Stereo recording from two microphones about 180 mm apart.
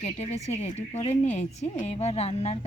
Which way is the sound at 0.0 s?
35° left (ahead or behind).